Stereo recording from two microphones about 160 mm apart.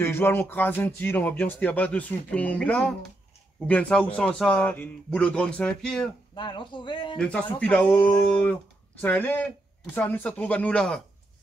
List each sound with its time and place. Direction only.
0.0 s speech: 15° left (ahead or behind)
6.3 s speech: 30° left (ahead or behind)
7.2 s speech: 5° left (ahead or behind)